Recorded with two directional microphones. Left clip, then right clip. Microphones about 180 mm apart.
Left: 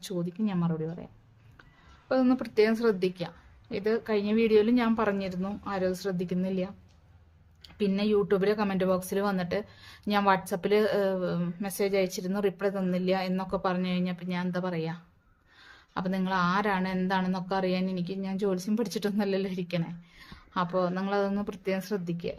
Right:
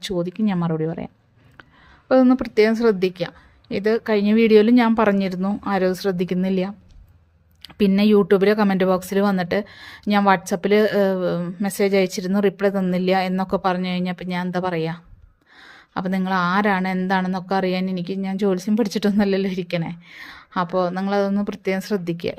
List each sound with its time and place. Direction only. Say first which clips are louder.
0.0 s speech: right 10 dB; 40° right (ahead or behind)